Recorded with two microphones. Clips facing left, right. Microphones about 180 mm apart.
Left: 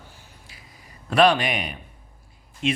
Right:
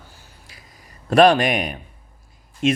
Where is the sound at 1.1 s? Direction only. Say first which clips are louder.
Right 5 dB; 45° right (ahead or behind).